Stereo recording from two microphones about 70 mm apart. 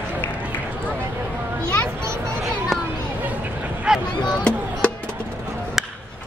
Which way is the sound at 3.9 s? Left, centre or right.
Centre.